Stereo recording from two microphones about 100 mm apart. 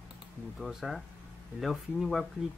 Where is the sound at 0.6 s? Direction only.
Centre (ahead or behind).